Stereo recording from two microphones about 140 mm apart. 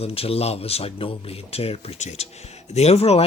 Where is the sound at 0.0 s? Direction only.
45° left (ahead or behind).